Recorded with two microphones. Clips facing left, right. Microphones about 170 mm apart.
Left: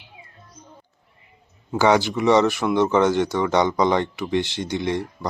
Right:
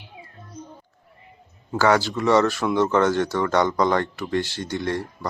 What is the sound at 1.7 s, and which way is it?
Speech, 15° left (ahead or behind).